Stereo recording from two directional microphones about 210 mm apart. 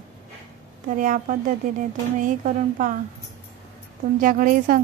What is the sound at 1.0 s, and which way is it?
A woman's voice, 40° right (ahead or behind).